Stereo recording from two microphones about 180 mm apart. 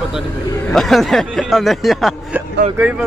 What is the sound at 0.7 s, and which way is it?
A man's voice, centre (ahead or behind).